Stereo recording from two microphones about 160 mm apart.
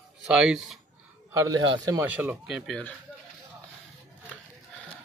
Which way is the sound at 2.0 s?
10° right (ahead or behind).